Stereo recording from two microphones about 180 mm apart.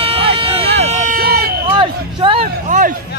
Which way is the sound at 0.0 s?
30° right (ahead or behind).